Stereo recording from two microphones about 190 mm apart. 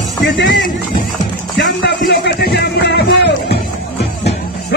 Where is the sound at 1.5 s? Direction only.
65° left (ahead or behind).